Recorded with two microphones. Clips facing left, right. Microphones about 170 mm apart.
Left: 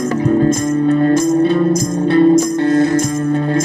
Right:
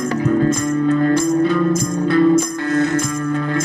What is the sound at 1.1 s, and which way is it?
Music, 45° left (ahead or behind).